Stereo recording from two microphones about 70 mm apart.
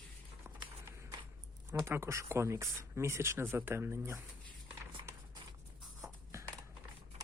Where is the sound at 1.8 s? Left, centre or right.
Right.